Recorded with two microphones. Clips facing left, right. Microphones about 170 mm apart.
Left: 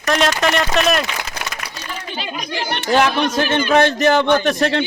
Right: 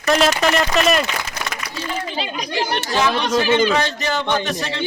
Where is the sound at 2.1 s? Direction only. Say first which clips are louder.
Right 2 dB; 30° right (ahead or behind).